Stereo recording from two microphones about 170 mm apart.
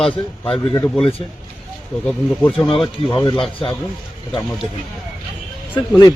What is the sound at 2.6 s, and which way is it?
Speech, 30° left (ahead or behind).